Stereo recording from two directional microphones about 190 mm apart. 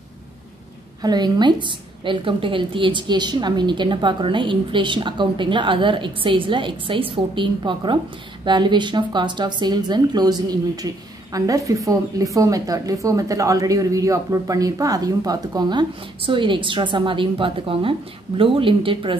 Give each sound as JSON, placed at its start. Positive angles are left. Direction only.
{"t": 1.0, "sound": "a woman's voice", "side_deg": -20}